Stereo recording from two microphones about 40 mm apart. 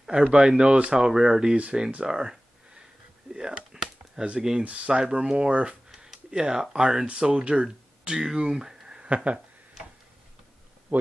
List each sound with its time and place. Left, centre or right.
0.1 s speech: right
1.0 s speech: centre
2.0 s a sound: centre
4.4 s speech: centre
4.6 s speech: right
7.1 s speech: right
8.1 s speech: centre
9.1 s speech: right
10.9 s speech: right